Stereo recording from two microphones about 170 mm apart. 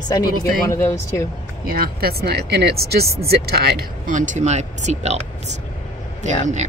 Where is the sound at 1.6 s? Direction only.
60° right (ahead or behind).